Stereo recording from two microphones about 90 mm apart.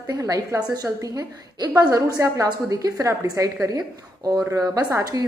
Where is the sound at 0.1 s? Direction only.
40° right (ahead or behind).